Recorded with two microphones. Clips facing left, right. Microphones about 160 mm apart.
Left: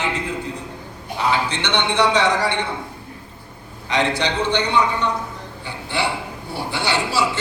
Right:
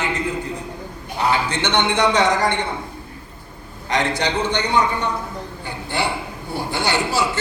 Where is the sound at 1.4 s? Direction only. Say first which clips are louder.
Right 2 dB; 45° right (ahead or behind).